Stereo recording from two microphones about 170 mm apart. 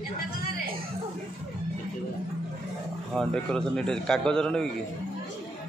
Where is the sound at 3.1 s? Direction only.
5° left (ahead or behind).